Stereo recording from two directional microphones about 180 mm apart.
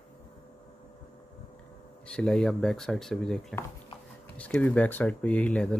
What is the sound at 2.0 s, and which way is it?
Speech, 5° left (ahead or behind).